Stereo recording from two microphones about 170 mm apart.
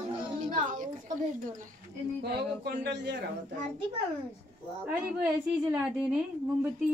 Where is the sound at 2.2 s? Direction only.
75° right (ahead or behind); by 3.2 s 90° right.